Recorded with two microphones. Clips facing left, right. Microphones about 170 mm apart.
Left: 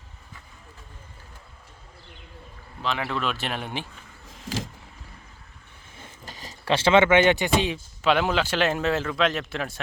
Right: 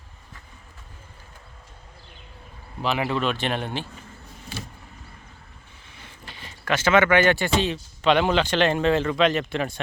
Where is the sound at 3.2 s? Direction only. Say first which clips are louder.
Right 4 dB; 5° left (ahead or behind).